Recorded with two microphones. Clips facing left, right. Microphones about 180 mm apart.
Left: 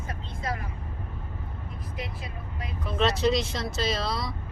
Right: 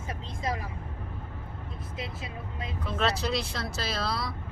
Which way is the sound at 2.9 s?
Centre (ahead or behind).